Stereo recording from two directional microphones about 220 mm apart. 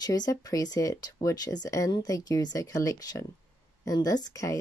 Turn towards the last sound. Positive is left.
turn(degrees=15)  # may be behind; listen again after turning